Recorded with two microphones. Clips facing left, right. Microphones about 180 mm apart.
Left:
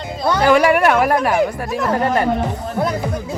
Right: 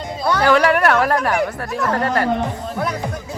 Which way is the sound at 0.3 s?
10° left (ahead or behind).